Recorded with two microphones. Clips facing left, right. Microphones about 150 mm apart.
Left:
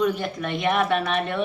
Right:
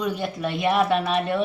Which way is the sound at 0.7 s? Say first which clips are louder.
Right 1 dB; 30° right (ahead or behind).